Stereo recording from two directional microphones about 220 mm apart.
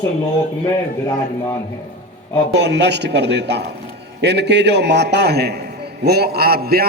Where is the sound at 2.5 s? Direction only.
50° right (ahead or behind).